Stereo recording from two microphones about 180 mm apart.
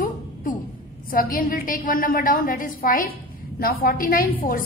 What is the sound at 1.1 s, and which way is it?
A woman's voice, 50° left (ahead or behind).